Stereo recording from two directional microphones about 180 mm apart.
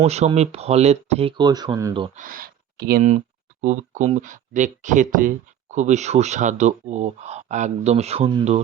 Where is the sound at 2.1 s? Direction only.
50° right (ahead or behind).